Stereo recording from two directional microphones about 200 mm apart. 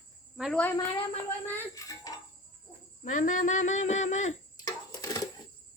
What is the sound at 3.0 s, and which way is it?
Speech, 40° left (ahead or behind).